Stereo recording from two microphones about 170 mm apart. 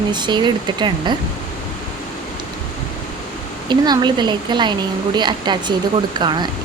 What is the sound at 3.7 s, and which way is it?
A woman's voice, 25° right (ahead or behind).